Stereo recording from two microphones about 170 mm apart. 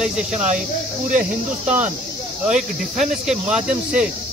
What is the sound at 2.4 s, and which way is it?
Speech, 45° right (ahead or behind).